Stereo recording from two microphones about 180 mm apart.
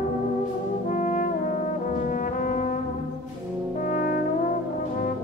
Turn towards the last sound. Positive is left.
turn(degrees=55)  # may be behind; listen again after turning